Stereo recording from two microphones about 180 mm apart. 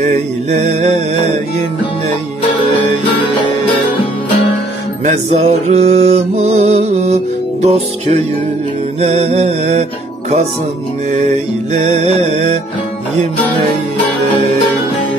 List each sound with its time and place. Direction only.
0.0 s mantra: 40° right (ahead or behind)
5.0 s mantra: 40° right (ahead or behind)
11.7 s mantra: 40° right (ahead or behind)